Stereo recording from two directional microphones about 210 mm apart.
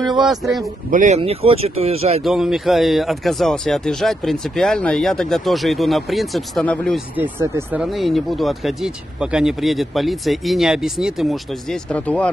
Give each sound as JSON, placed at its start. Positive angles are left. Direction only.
{"t": 0.2, "sound": "speech", "side_deg": 0}
{"t": 0.8, "sound": "speech", "side_deg": -35}
{"t": 2.2, "sound": "speech", "side_deg": 0}
{"t": 7.2, "sound": "speech", "side_deg": -10}